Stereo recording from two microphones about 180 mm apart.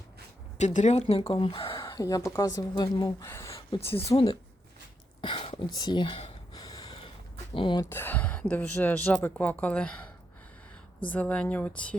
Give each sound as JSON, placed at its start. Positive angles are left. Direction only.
{"t": 0.6, "sound": "speech", "side_deg": 40}
{"t": 1.8, "sound": "a woman's voice", "side_deg": 20}
{"t": 6.5, "sound": "snort", "side_deg": 20}
{"t": 7.5, "sound": "a woman's voice", "side_deg": 25}
{"t": 7.9, "sound": "speech", "side_deg": 10}
{"t": 11.1, "sound": "speech", "side_deg": 10}